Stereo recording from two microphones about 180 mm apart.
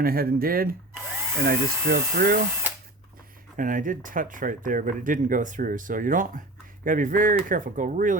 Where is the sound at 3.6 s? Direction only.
50° right (ahead or behind).